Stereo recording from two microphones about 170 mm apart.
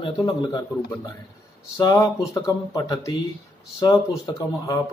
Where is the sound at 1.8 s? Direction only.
20° left (ahead or behind).